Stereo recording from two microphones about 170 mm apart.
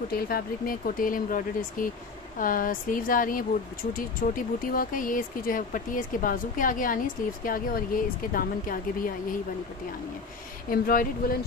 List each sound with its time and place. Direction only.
0.1 s speech: 60° left (ahead or behind)
10.7 s speech: 55° left (ahead or behind)